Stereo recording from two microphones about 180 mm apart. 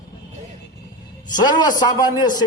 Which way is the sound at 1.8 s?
20° left (ahead or behind).